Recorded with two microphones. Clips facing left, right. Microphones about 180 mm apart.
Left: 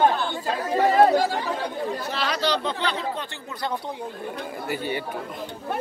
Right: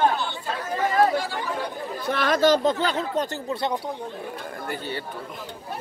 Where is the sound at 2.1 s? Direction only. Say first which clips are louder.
Right 9 dB; 50° right (ahead or behind).